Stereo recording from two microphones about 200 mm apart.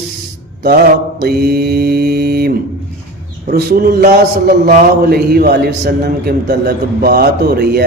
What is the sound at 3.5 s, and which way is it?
A man's voice, 45° right (ahead or behind).